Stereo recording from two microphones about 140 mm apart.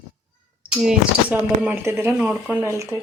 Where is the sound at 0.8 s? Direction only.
10° right (ahead or behind).